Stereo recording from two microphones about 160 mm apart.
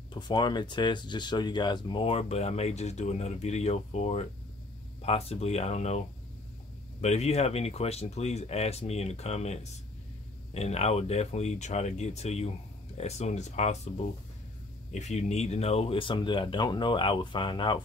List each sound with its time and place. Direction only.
0.1 s speech: 25° left (ahead or behind)